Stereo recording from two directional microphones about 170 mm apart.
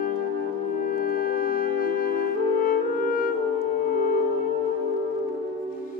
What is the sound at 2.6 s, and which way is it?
French horn, 55° left (ahead or behind).